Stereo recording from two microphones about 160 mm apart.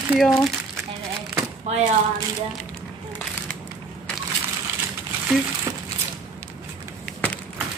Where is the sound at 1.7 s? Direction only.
40° right (ahead or behind).